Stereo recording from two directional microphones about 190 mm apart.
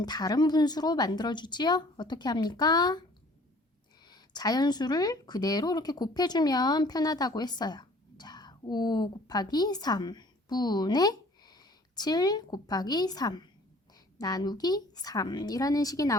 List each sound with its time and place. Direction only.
0.0 s speech: 20° left (ahead or behind)
4.1 s speech: 20° left (ahead or behind)